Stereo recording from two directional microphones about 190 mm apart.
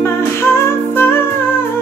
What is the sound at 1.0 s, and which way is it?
Music, 10° left (ahead or behind).